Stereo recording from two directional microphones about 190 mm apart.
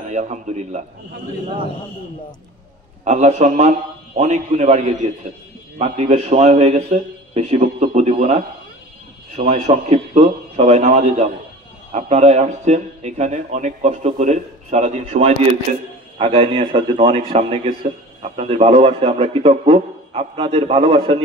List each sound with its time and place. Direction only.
0.1 s speech: 40° right (ahead or behind)
3.0 s speech: 35° right (ahead or behind)
9.4 s a man's voice: 35° right (ahead or behind)